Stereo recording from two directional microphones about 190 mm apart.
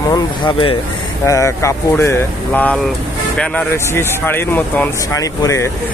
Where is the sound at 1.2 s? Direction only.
15° left (ahead or behind).